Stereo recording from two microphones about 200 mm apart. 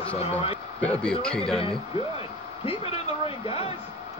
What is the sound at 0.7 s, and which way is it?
Speech, 5° left (ahead or behind).